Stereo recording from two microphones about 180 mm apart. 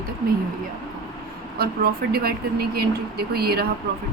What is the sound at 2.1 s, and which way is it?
Speech, 60° right (ahead or behind).